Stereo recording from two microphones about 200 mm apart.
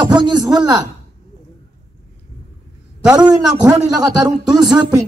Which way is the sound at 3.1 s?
20° right (ahead or behind).